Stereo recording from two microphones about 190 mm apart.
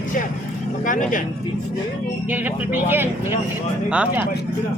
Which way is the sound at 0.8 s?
45° left (ahead or behind).